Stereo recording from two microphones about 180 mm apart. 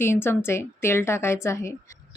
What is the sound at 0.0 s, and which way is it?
Speech, 15° left (ahead or behind).